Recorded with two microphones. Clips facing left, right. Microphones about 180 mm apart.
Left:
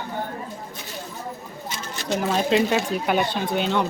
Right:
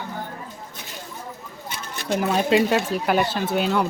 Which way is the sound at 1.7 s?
55° right (ahead or behind).